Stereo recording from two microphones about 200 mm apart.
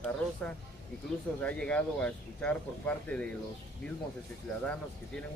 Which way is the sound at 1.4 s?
5° left (ahead or behind).